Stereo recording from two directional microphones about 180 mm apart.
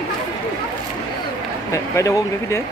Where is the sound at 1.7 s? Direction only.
15° left (ahead or behind).